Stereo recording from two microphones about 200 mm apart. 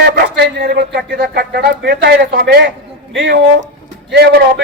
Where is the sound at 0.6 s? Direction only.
50° right (ahead or behind).